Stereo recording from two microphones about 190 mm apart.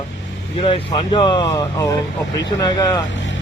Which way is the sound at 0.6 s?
30° left (ahead or behind).